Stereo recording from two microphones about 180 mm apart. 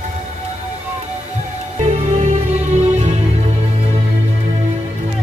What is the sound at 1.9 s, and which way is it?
Music, 40° right (ahead or behind).